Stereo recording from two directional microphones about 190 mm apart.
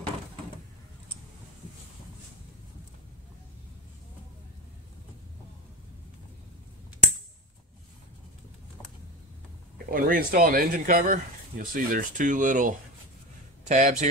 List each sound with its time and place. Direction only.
9.8 s speech: 50° right (ahead or behind)